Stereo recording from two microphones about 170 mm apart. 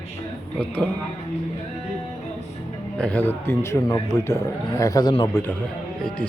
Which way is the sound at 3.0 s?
10° left (ahead or behind).